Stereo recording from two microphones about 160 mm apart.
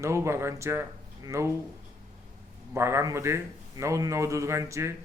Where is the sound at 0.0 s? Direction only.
15° right (ahead or behind).